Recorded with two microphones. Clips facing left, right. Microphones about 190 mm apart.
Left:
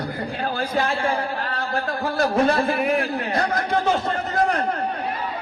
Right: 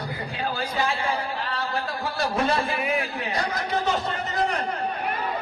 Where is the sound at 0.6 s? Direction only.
50° left (ahead or behind).